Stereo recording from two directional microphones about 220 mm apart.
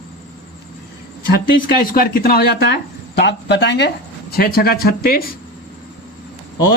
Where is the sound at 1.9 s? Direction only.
40° left (ahead or behind).